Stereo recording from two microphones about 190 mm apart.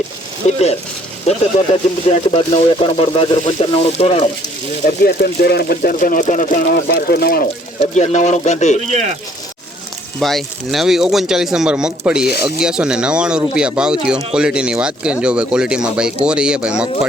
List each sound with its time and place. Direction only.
0.4 s speech: 35° left (ahead or behind)
4.9 s speech: 55° left (ahead or behind)
6.8 s speech: 55° left (ahead or behind)
7.8 s speech: 35° left (ahead or behind)
8.9 s speech: 35° right (ahead or behind)
10.2 s speech: centre (ahead or behind)
12.2 s speech: 55° left (ahead or behind)
12.5 s speech: 5° right (ahead or behind)